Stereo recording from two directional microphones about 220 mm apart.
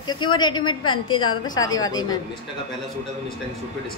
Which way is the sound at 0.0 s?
20° left (ahead or behind).